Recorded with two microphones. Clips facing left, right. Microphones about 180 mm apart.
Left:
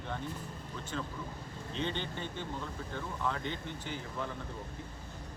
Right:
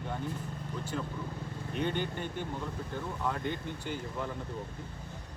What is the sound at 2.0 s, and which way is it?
Speech, 10° right (ahead or behind).